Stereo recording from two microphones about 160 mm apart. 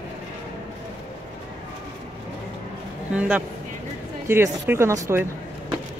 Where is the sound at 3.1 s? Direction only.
5° right (ahead or behind).